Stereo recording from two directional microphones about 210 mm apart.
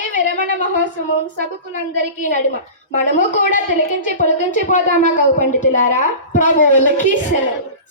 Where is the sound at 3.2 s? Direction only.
35° left (ahead or behind).